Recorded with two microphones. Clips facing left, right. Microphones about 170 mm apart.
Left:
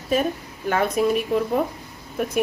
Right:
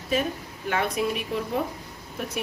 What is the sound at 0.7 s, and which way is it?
Speech, 45° left (ahead or behind).